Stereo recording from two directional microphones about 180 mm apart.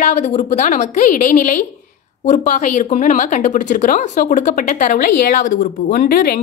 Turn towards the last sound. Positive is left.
turn(degrees=55)  # may be behind; listen again after turning